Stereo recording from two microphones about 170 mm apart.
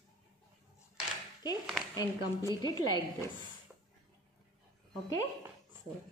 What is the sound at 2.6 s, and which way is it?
Speech, 20° left (ahead or behind).